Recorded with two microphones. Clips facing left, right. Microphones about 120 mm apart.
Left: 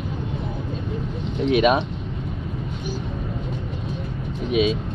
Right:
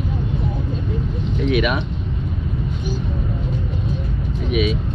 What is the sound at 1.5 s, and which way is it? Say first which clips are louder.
Speech: left 3 dB; 30° left (ahead or behind).